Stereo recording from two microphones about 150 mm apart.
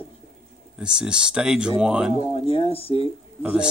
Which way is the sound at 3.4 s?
5° right (ahead or behind).